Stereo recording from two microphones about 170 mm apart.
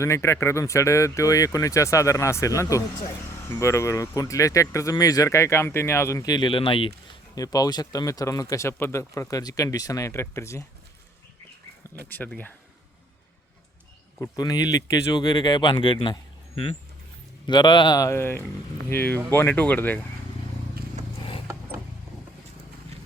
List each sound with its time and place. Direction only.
0.0 s speech: 15° left (ahead or behind)
7.3 s speech: 20° left (ahead or behind)
12.0 s speech: 10° left (ahead or behind)
14.2 s speech: 25° left (ahead or behind)
17.4 s speech: 25° left (ahead or behind); by 20.0 s 10° left (ahead or behind)